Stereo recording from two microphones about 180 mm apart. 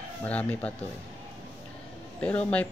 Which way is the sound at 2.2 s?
5° left (ahead or behind).